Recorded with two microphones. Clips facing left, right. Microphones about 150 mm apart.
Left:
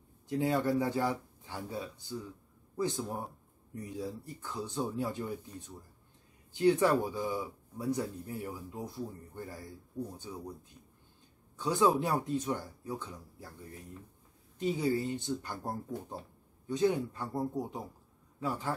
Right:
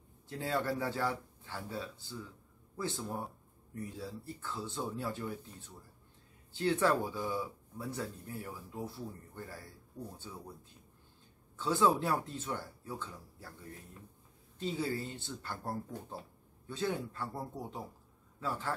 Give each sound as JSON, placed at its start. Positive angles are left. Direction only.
{"t": 0.3, "sound": "speech", "side_deg": 15}
{"t": 11.5, "sound": "speech", "side_deg": 15}
{"t": 14.6, "sound": "speech", "side_deg": 15}